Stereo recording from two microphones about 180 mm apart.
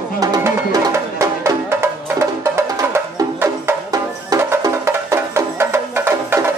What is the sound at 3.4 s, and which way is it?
Music, 15° right (ahead or behind).